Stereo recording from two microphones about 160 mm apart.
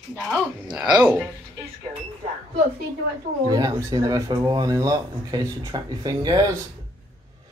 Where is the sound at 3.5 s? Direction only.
25° right (ahead or behind).